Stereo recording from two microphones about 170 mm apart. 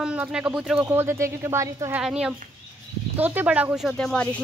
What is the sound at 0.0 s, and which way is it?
Speech, 5° right (ahead or behind).